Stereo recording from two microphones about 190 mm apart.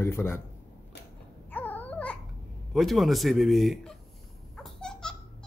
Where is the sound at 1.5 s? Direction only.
10° left (ahead or behind).